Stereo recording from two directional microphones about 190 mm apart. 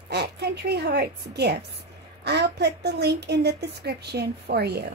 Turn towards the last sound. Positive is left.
turn(degrees=-60)  # may be behind; listen again after turning